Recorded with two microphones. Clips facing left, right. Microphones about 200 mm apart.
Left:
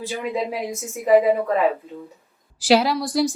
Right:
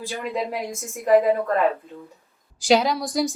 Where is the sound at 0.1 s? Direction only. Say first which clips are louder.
Left 2 dB; centre (ahead or behind).